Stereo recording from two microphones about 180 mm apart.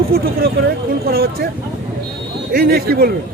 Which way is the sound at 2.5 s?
60° right (ahead or behind).